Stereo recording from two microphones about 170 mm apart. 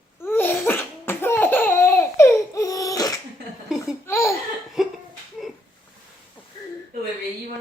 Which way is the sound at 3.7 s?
Centre (ahead or behind).